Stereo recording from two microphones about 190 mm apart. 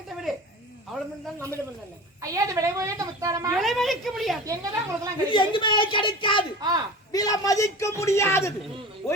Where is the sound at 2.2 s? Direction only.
15° right (ahead or behind).